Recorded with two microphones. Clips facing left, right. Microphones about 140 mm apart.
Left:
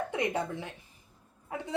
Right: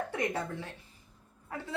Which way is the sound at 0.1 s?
15° left (ahead or behind).